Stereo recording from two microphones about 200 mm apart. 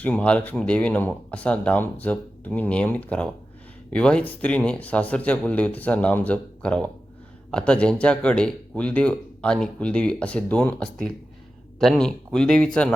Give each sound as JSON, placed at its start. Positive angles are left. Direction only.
{"t": 0.0, "sound": "speech", "side_deg": 5}